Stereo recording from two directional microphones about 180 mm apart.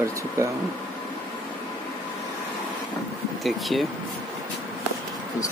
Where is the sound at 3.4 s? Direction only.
Centre (ahead or behind).